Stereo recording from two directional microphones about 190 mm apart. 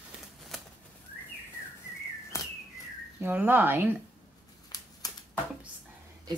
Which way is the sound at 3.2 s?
10° right (ahead or behind).